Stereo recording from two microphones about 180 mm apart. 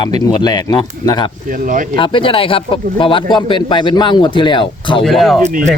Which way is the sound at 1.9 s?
30° left (ahead or behind).